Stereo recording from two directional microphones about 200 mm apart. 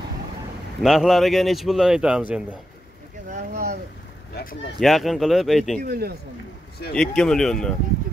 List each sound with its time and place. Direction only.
0.8 s speech: centre (ahead or behind)
3.3 s speech: 40° right (ahead or behind)
4.7 s speech: centre (ahead or behind)
5.8 s speech: 50° right (ahead or behind)
7.0 s speech: 5° left (ahead or behind)